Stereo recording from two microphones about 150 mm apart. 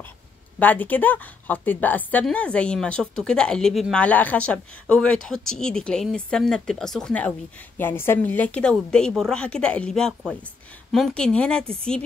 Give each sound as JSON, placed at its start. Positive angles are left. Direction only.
{"t": 0.6, "sound": "a woman's voice", "side_deg": 10}